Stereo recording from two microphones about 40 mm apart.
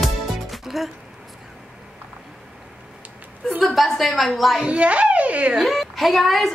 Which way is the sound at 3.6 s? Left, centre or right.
Centre.